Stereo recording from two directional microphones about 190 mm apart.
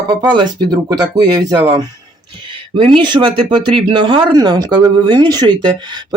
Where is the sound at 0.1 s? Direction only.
20° right (ahead or behind).